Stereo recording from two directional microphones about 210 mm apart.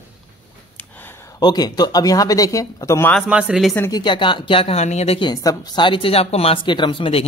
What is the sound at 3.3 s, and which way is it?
Speech, 5° right (ahead or behind).